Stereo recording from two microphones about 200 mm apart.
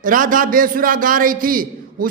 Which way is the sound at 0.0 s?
45° right (ahead or behind).